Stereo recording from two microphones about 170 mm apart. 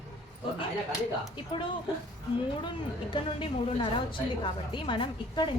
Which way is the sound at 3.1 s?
30° left (ahead or behind).